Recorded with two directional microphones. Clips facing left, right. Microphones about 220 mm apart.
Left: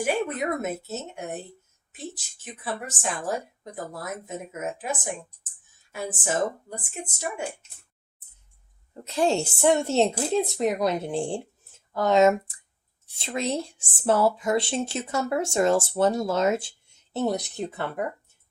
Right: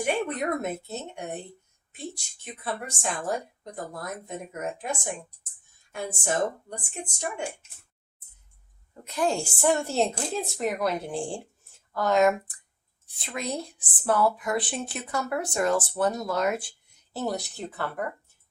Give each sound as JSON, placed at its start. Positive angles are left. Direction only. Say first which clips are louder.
{"t": 0.0, "sound": "a woman's voice", "louder": "left 1 dB", "side_deg": 5}
{"t": 9.0, "sound": "speech", "louder": "left 3 dB", "side_deg": 25}